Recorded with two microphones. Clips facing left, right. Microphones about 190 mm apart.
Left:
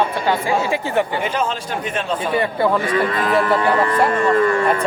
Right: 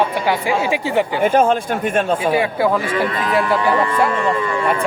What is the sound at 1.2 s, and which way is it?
Speech, 50° right (ahead or behind).